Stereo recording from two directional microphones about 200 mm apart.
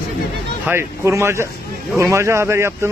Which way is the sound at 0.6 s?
15° right (ahead or behind).